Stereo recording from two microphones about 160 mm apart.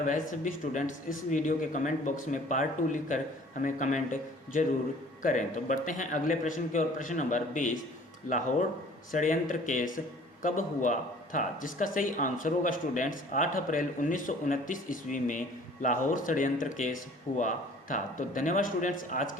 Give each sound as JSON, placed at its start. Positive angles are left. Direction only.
{"t": 0.0, "sound": "speech", "side_deg": 55}
{"t": 9.1, "sound": "speech", "side_deg": 55}